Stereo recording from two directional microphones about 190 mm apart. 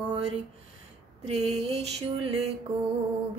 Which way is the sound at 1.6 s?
35° right (ahead or behind).